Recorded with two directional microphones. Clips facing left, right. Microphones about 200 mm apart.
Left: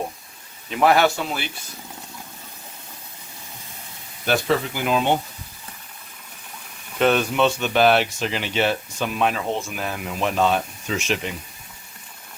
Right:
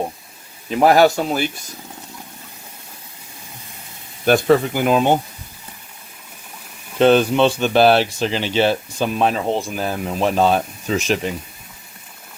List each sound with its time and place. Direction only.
0.7 s speech: 40° right (ahead or behind)
4.3 s speech: 50° right (ahead or behind)
7.0 s speech: 30° right (ahead or behind)